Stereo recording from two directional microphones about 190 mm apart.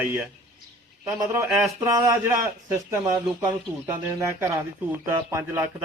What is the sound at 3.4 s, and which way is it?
Speech, 15° right (ahead or behind).